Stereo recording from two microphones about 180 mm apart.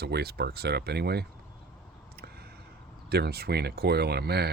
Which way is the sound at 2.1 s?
60° right (ahead or behind).